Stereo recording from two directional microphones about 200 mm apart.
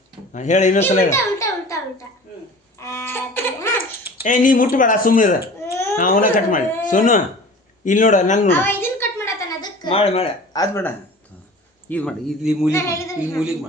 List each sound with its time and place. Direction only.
0.3 s speech: 35° left (ahead or behind)
1.1 s a sound: 15° left (ahead or behind)
4.2 s speech: 40° left (ahead or behind)
5.6 s throat clearing: 15° left (ahead or behind)
6.0 s speech: 40° left (ahead or behind)
8.4 s a sound: 10° left (ahead or behind); by 10.6 s 30° left (ahead or behind)
10.6 s a woman's voice: 10° left (ahead or behind)
12.7 s a woman's voice: 15° left (ahead or behind)